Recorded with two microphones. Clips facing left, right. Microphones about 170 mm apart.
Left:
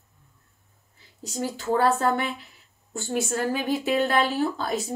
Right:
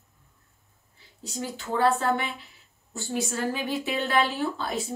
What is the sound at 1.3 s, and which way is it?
A woman's voice, 40° left (ahead or behind).